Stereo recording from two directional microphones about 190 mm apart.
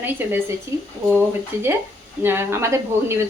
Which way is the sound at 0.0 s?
10° right (ahead or behind).